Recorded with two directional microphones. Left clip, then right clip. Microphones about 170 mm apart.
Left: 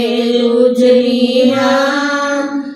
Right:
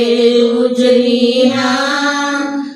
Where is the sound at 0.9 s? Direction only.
35° left (ahead or behind).